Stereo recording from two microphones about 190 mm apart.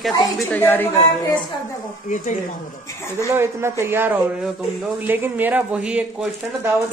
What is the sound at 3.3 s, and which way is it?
Speech, 15° right (ahead or behind).